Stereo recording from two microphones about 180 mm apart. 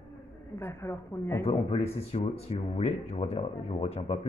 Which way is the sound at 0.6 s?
15° left (ahead or behind).